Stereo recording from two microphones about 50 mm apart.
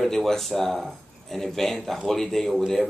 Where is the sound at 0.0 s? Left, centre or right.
Centre.